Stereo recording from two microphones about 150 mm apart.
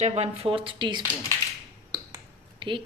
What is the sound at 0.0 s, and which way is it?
Speech, 45° right (ahead or behind).